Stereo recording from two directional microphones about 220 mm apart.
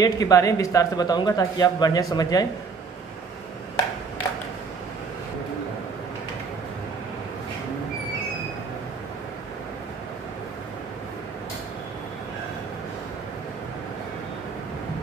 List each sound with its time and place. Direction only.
0.0 s a man's voice: 15° left (ahead or behind)